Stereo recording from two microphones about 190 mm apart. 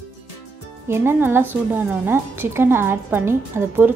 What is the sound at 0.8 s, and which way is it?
A woman's voice, 10° right (ahead or behind).